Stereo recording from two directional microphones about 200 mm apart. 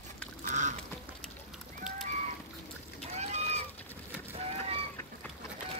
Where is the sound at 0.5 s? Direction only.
35° right (ahead or behind).